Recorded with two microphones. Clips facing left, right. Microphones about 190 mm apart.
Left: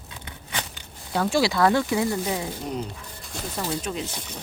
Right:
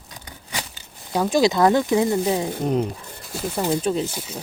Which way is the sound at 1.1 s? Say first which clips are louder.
Right 4 dB; 15° right (ahead or behind).